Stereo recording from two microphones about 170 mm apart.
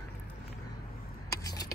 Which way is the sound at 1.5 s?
20° left (ahead or behind).